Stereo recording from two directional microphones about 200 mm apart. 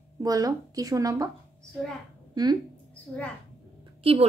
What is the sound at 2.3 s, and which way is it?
Speech, 20° right (ahead or behind).